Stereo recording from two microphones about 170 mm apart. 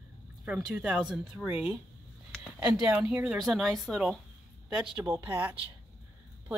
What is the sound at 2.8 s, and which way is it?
Speech, 5° right (ahead or behind).